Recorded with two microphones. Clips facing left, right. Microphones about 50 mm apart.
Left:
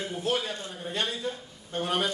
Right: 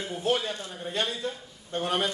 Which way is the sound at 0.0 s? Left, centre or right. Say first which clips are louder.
Right 2 dB; centre.